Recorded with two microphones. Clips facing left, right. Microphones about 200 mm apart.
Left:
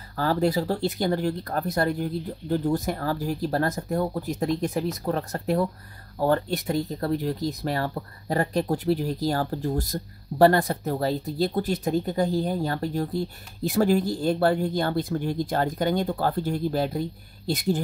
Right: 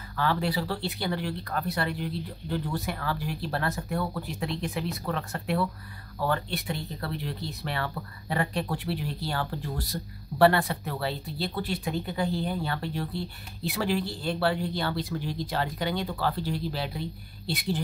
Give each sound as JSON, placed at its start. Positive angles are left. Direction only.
{"t": 0.1, "sound": "speech", "side_deg": 40}